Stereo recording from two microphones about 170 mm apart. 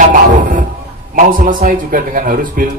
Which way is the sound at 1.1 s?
55° right (ahead or behind).